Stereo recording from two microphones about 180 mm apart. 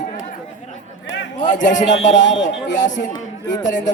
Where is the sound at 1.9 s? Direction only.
90° left.